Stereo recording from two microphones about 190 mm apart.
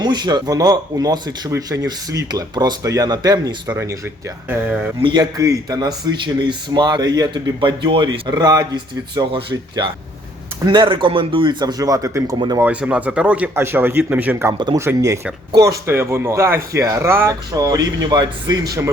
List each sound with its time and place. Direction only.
0.0 s speech: 20° right (ahead or behind)
5.0 s speech: 20° right (ahead or behind)
12.6 s speech: 5° right (ahead or behind)
14.6 s speech: 20° right (ahead or behind)